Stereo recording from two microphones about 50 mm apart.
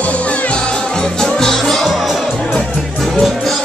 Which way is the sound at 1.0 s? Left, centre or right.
Centre.